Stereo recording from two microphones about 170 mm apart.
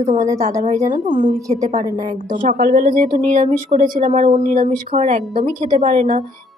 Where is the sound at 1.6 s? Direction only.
50° right (ahead or behind).